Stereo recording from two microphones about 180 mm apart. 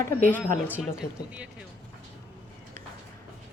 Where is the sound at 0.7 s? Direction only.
5° right (ahead or behind).